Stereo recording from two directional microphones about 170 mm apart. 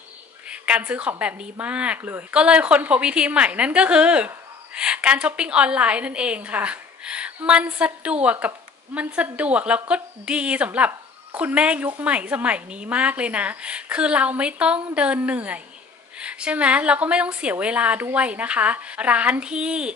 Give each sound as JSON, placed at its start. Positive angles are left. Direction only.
{"t": 0.5, "sound": "a woman's voice", "side_deg": -10}